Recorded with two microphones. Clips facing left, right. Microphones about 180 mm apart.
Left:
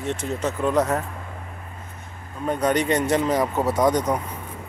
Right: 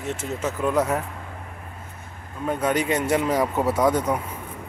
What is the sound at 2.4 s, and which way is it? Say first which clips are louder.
Speech: left 2 dB; 5° right (ahead or behind).